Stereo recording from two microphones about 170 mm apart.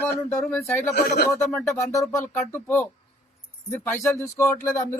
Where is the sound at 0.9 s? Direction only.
70° left (ahead or behind).